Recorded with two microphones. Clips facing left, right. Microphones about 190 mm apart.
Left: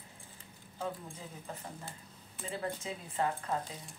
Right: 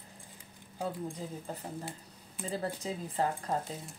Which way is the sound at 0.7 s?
35° right (ahead or behind).